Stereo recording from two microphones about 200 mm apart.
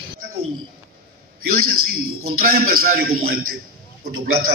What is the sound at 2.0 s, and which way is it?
Speech, 90° right.